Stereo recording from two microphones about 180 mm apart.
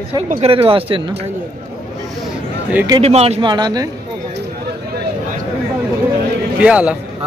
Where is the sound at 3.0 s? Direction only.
35° right (ahead or behind).